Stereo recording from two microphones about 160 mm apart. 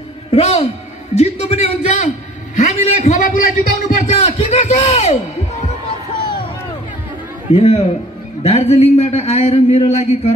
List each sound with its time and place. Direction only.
0.3 s a man's voice: 40° left (ahead or behind)
7.5 s a man's voice: 40° left (ahead or behind)